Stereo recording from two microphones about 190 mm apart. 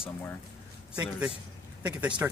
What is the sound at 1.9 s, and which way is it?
Speech, 5° right (ahead or behind).